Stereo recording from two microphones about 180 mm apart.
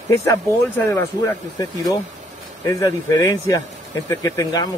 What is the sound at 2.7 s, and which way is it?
Speech, 15° left (ahead or behind).